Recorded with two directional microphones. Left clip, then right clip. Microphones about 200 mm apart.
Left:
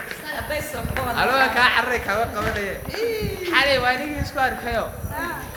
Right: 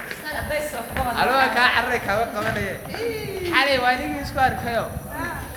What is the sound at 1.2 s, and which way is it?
A man's voice, centre (ahead or behind).